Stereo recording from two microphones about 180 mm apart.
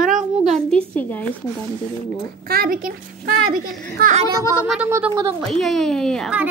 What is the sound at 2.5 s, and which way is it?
A child's voice, 55° right (ahead or behind).